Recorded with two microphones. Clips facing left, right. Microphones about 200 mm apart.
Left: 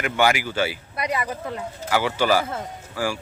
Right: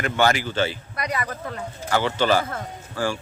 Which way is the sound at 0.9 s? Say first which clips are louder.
Left 2 dB; 25° left (ahead or behind).